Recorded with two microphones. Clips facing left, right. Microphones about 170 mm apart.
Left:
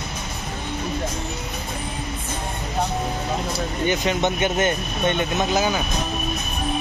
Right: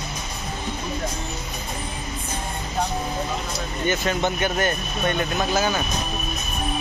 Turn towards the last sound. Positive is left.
turn(degrees=15)  # may be behind; listen again after turning